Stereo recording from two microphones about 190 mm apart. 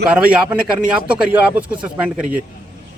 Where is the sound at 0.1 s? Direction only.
5° right (ahead or behind).